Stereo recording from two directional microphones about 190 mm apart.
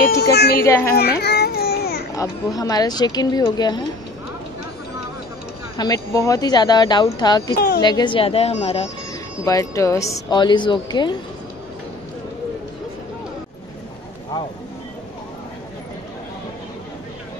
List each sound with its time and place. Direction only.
0.2 s music: 60° left (ahead or behind)
0.6 s a woman's voice: 15° left (ahead or behind)
0.9 s a sound: 55° left (ahead or behind)
2.1 s a woman's voice: 20° left (ahead or behind)
5.8 s a woman's voice: 20° left (ahead or behind)
7.5 s a woman's voice: 55° left (ahead or behind)
7.8 s a woman's voice: 25° left (ahead or behind)
9.4 s a woman's voice: 15° left (ahead or behind)